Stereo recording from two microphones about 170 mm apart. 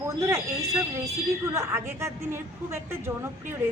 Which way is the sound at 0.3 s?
20° right (ahead or behind).